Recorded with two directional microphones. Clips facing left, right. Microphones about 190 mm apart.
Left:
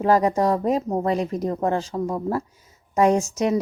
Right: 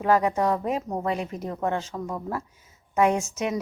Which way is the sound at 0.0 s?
35° left (ahead or behind).